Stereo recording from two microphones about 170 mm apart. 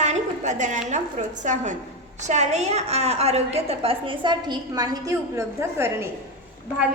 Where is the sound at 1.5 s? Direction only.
45° right (ahead or behind); by 5.9 s 15° right (ahead or behind).